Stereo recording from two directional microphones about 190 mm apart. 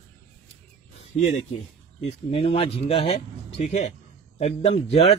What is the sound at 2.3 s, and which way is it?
Speech, 30° left (ahead or behind).